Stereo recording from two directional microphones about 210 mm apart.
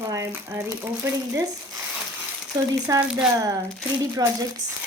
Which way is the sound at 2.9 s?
15° right (ahead or behind).